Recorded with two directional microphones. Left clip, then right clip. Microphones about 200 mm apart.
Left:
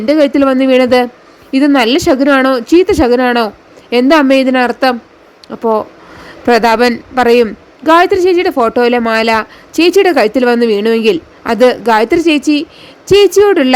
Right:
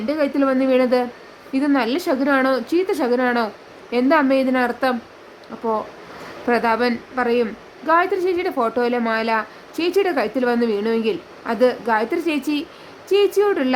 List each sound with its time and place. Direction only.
0.0 s a man's voice: 35° left (ahead or behind)